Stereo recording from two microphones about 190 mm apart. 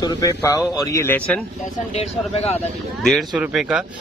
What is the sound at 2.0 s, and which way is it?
Speech, 35° left (ahead or behind).